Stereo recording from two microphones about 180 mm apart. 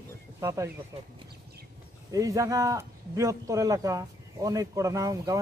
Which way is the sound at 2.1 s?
20° right (ahead or behind).